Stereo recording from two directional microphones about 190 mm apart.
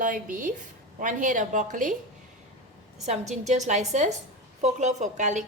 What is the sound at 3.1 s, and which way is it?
A woman's voice, 35° right (ahead or behind).